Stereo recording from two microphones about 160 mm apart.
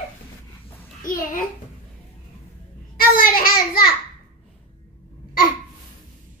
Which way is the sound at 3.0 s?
65° left (ahead or behind).